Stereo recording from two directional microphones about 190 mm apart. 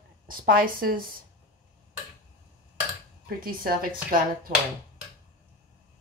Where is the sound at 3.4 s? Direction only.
50° right (ahead or behind).